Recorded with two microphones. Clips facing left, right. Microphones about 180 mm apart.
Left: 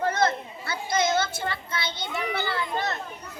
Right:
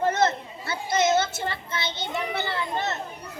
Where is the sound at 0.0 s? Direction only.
25° right (ahead or behind).